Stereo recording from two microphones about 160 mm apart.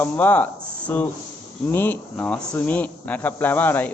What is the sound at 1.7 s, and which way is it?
Speech, 15° left (ahead or behind).